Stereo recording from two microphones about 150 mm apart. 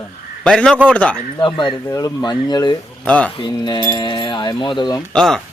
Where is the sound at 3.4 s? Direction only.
30° left (ahead or behind).